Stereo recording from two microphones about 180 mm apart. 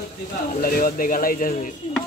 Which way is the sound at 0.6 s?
50° left (ahead or behind).